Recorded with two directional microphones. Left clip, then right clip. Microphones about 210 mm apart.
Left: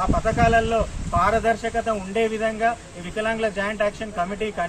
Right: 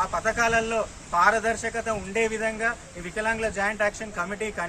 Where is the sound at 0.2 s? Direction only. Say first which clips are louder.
Left 6 dB; 5° right (ahead or behind).